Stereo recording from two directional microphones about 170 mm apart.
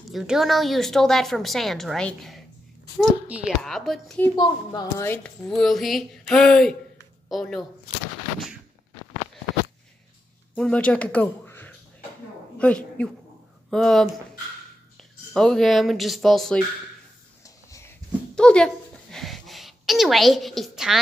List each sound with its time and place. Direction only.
0.1 s a woman's voice: centre (ahead or behind)
4.4 s a woman's voice: 25° left (ahead or behind)
5.0 s a woman's voice: 10° left (ahead or behind)
10.5 s a woman's voice: 5° left (ahead or behind)
15.3 s a woman's voice: 5° left (ahead or behind)
17.6 s a sound: 20° left (ahead or behind)
18.3 s a sound: 5° left (ahead or behind)